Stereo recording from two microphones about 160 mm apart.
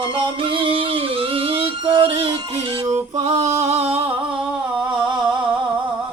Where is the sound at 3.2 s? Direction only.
45° right (ahead or behind).